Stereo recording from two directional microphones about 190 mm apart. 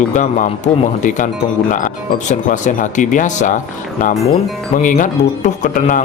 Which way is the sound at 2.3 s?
40° left (ahead or behind).